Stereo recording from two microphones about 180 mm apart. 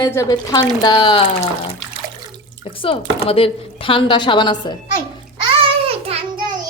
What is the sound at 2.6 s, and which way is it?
Speech, 30° left (ahead or behind).